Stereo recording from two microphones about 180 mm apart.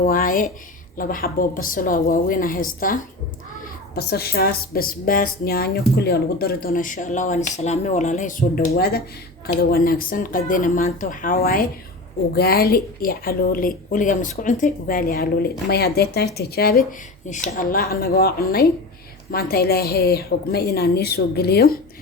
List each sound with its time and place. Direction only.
0.0 s a woman's voice: 50° left (ahead or behind)
3.6 s a woman's voice: 60° left (ahead or behind)
17.2 s a woman's voice: 45° left (ahead or behind); by 21.8 s 60° left (ahead or behind)